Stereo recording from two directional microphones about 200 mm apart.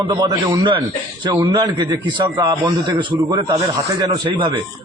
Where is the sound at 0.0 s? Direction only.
25° right (ahead or behind).